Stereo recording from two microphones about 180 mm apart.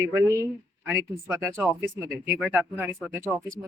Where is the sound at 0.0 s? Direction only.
15° right (ahead or behind).